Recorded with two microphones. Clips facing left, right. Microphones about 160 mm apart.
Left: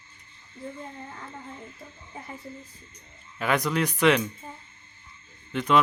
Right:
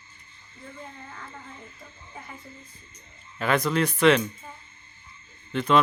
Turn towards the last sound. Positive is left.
turn(degrees=15)  # may be behind; listen again after turning